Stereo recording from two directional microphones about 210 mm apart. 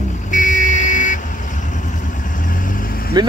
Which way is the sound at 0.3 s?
35° left (ahead or behind).